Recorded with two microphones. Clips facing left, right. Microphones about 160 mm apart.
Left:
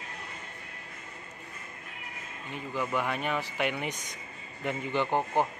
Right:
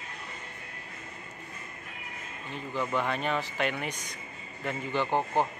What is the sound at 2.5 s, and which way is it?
Speech, 10° left (ahead or behind).